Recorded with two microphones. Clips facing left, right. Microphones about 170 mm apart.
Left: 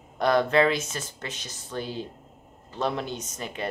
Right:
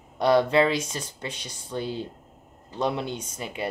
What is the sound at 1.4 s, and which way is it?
Speech, 10° right (ahead or behind).